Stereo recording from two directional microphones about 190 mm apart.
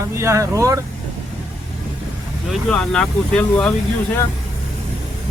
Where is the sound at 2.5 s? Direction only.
5° left (ahead or behind).